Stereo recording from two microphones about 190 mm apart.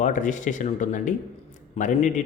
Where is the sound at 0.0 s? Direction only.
40° left (ahead or behind).